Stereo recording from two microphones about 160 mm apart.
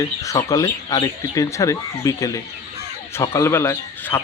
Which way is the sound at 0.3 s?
20° left (ahead or behind).